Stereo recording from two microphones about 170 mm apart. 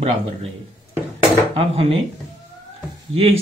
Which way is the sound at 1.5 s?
35° right (ahead or behind).